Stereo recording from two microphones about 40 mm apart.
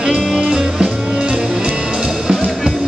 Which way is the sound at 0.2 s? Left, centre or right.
Centre.